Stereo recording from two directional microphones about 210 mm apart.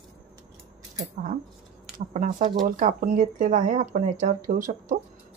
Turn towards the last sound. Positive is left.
turn(degrees=-40)  # may be behind; listen again after turning